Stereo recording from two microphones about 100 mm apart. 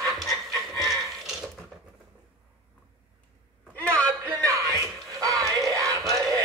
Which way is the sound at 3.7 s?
15° left (ahead or behind).